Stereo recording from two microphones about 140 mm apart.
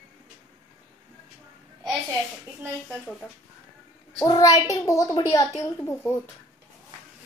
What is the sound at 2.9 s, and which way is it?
Speech, 5° left (ahead or behind).